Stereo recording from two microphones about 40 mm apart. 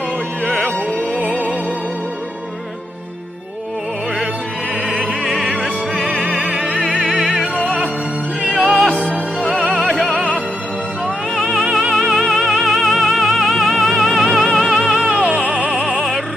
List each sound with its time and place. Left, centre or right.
0.9 s music: right
4.9 s music: centre
8.5 s music: centre
8.8 s music: right
11.3 s music: centre
15.2 s music: right
15.7 s music: centre